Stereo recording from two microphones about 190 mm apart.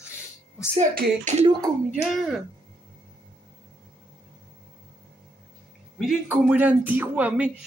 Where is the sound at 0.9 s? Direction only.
45° right (ahead or behind).